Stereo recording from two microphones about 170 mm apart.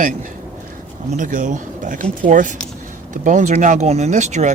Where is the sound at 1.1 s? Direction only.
50° right (ahead or behind).